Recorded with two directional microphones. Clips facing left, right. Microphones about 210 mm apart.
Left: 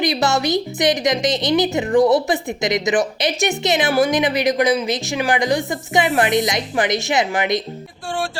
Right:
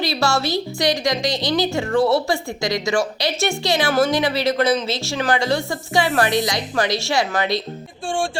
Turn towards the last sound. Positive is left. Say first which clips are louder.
# left 2 dB
turn(degrees=20)  # may be behind; listen again after turning